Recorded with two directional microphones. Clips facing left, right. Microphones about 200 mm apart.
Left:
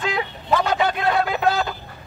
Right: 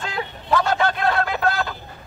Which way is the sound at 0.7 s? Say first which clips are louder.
Left 1 dB; 15° left (ahead or behind).